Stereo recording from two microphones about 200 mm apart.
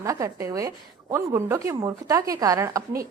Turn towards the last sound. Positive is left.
turn(degrees=-15)  # may be behind; listen again after turning